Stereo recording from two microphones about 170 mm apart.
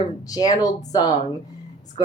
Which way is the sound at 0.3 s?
20° left (ahead or behind).